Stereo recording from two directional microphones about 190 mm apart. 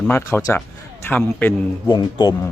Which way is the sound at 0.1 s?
10° left (ahead or behind).